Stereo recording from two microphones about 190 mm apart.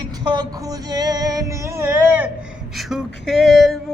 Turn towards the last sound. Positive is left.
turn(degrees=0)  # may be behind; listen again after turning